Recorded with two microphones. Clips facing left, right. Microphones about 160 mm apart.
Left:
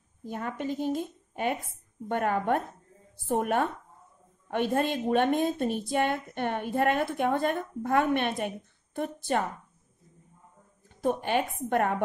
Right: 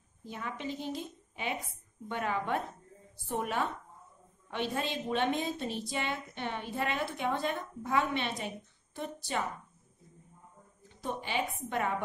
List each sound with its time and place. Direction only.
0.2 s a woman's voice: 50° left (ahead or behind)
10.9 s a woman's voice: 50° left (ahead or behind)